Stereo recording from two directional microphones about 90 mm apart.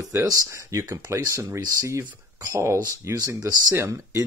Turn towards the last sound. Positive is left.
turn(degrees=-35)  # may be behind; listen again after turning